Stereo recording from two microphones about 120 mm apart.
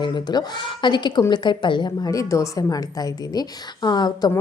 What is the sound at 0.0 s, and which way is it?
A woman's voice, 40° left (ahead or behind).